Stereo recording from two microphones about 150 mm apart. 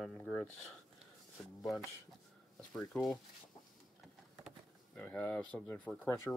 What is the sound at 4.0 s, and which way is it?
Power windows, centre (ahead or behind).